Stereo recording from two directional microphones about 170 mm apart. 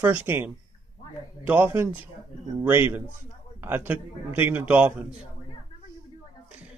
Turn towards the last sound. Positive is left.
turn(degrees=-10)  # may be behind; listen again after turning